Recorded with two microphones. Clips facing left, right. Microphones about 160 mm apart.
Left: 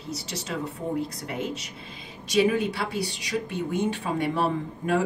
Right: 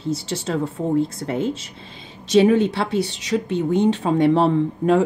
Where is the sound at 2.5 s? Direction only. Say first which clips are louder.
Right 8 dB; 30° right (ahead or behind).